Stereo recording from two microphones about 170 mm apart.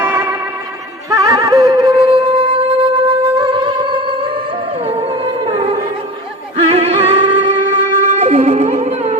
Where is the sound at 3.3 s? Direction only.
30° right (ahead or behind).